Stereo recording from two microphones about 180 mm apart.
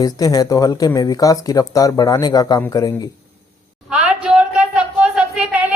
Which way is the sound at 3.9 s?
5° right (ahead or behind).